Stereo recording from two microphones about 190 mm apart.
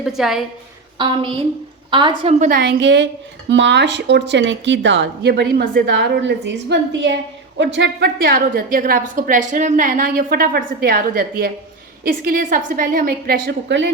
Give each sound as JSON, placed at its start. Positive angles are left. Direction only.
{"t": 0.0, "sound": "a woman's voice", "side_deg": 0}
{"t": 0.9, "sound": "a woman's voice", "side_deg": -25}
{"t": 2.4, "sound": "a woman's voice", "side_deg": -50}